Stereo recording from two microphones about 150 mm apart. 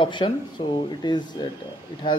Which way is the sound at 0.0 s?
35° left (ahead or behind).